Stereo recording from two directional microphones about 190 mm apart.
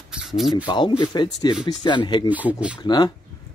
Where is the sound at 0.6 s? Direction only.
25° left (ahead or behind).